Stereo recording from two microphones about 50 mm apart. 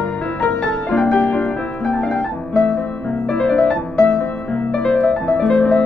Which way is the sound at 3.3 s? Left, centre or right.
Centre.